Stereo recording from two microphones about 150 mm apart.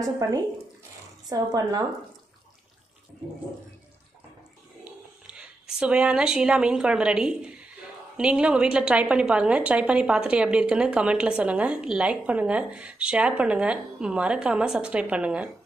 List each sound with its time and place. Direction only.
1.5 s speech: 25° right (ahead or behind)
5.2 s a woman's voice: 5° right (ahead or behind)